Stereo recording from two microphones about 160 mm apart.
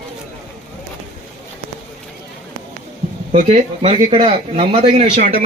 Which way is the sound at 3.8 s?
35° right (ahead or behind).